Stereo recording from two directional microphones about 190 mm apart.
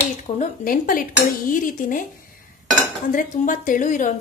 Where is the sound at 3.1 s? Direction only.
45° left (ahead or behind).